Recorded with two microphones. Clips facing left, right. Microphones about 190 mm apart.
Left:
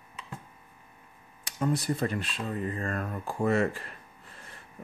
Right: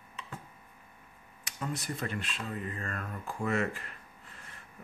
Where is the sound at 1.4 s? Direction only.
35° left (ahead or behind).